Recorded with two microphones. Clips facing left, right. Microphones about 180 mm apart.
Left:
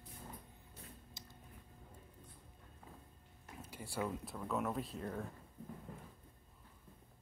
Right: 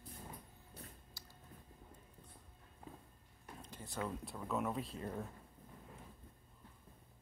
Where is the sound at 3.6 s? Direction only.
10° left (ahead or behind).